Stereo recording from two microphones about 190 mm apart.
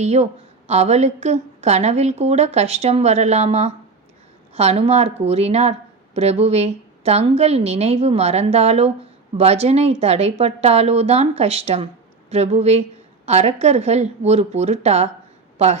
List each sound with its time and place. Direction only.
0.0 s a woman's voice: 35° right (ahead or behind)